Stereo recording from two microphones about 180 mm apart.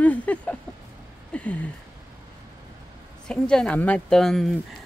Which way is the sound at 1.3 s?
5° left (ahead or behind).